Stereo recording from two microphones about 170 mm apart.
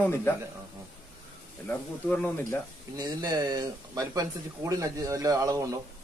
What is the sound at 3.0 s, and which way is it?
Speech, 20° right (ahead or behind).